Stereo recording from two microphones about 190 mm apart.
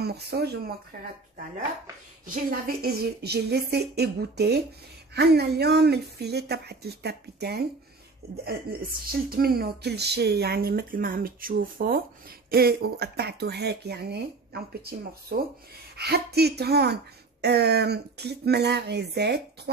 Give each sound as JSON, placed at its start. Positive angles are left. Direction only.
{"t": 0.0, "sound": "speech", "side_deg": -60}
{"t": 2.2, "sound": "speech", "side_deg": -50}
{"t": 9.0, "sound": "speech", "side_deg": -50}